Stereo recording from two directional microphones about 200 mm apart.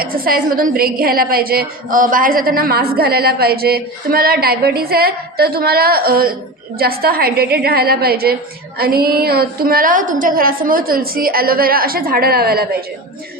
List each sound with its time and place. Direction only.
0.0 s a woman's voice: 45° right (ahead or behind)